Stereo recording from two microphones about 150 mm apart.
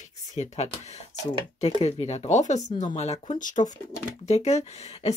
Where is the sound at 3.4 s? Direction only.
60° left (ahead or behind).